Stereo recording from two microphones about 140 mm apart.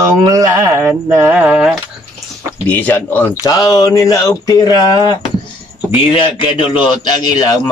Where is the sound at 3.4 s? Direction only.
25° left (ahead or behind).